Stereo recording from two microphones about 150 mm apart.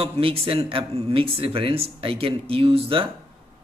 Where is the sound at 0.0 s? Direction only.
40° right (ahead or behind).